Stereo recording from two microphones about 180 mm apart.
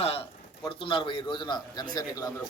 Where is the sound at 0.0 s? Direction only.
35° left (ahead or behind).